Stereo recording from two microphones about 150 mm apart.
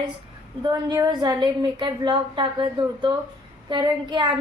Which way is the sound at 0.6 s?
25° right (ahead or behind).